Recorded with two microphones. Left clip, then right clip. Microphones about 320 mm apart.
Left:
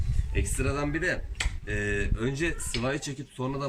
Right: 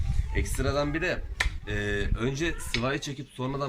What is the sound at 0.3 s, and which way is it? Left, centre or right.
Speech, centre.